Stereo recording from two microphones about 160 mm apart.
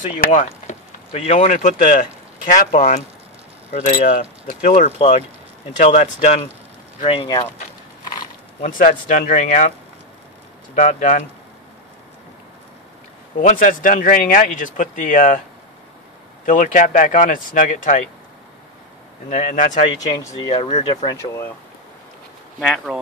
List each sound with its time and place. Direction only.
0.3 s speech: 45° left (ahead or behind)
4.0 s speech: 55° left (ahead or behind)
7.1 s speech: 30° left (ahead or behind)
8.5 s speech: 55° left (ahead or behind)
13.4 s speech: 50° left (ahead or behind)
16.4 s speech: 55° left (ahead or behind)
19.2 s speech: 55° left (ahead or behind)
20.5 s speech: 40° left (ahead or behind)
22.6 s speech: centre (ahead or behind)